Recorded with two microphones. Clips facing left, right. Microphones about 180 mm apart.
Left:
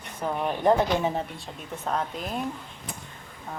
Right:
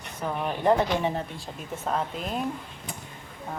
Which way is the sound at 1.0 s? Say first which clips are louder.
Left 1 dB; centre (ahead or behind).